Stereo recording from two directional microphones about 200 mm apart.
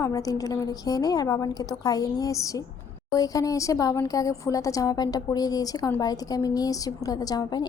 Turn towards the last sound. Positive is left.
turn(degrees=20)  # may be behind; listen again after turning